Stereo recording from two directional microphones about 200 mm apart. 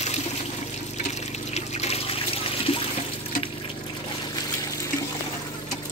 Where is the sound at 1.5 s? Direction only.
35° left (ahead or behind).